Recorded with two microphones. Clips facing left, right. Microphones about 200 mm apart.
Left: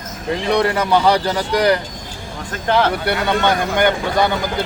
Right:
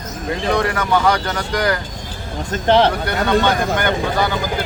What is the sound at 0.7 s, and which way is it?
Speech, 35° left (ahead or behind).